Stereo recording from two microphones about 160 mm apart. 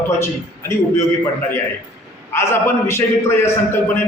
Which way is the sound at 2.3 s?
15° left (ahead or behind).